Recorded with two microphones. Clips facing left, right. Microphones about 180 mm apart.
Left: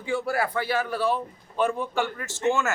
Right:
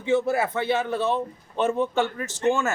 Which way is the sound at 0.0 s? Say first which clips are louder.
Right 4 dB; 20° right (ahead or behind).